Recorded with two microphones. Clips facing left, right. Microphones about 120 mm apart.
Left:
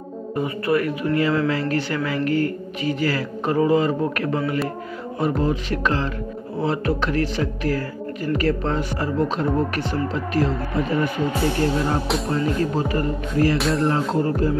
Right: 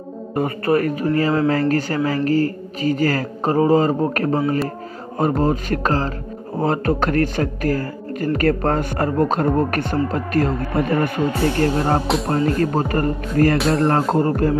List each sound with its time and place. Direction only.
0.4 s speech: 45° right (ahead or behind)
13.6 s speech: centre (ahead or behind)
13.8 s speech: 50° right (ahead or behind)